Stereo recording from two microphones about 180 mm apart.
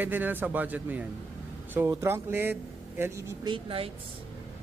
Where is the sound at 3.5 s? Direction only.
30° right (ahead or behind).